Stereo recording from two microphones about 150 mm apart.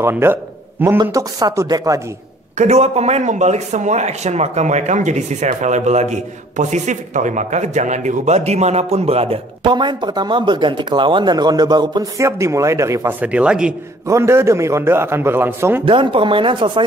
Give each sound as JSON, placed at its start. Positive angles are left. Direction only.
{"t": 0.0, "sound": "a man's voice", "side_deg": -15}
{"t": 2.5, "sound": "speech", "side_deg": -50}
{"t": 14.0, "sound": "a man's voice", "side_deg": -20}
{"t": 15.8, "sound": "speech", "side_deg": -35}